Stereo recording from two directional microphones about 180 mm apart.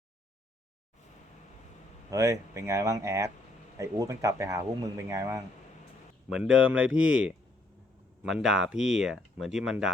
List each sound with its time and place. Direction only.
2.0 s speech: 20° right (ahead or behind)
6.5 s speech: 5° right (ahead or behind)